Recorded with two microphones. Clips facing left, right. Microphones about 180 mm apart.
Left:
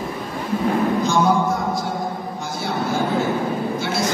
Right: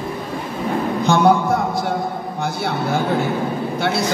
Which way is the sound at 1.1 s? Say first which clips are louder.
Right 7 dB; 60° right (ahead or behind).